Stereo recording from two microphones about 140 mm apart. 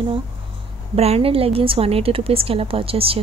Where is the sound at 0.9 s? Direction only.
45° right (ahead or behind).